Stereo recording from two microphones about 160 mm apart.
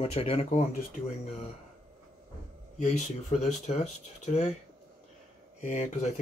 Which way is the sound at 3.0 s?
45° left (ahead or behind).